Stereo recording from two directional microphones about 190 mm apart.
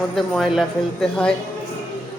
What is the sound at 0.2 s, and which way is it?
Speech, centre (ahead or behind).